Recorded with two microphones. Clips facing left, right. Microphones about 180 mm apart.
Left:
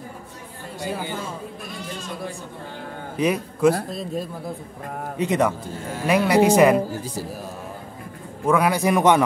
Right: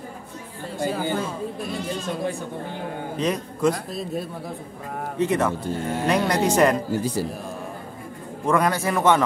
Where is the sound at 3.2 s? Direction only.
10° left (ahead or behind).